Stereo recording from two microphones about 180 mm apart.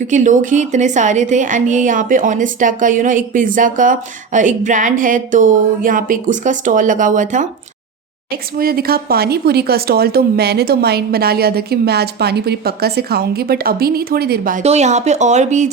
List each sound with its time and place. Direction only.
0.1 s a woman's voice: 45° right (ahead or behind)
8.3 s speech: 55° right (ahead or behind)
14.6 s speech: 35° right (ahead or behind)